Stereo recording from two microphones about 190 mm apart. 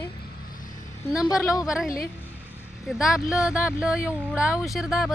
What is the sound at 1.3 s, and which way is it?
Speech, 15° left (ahead or behind).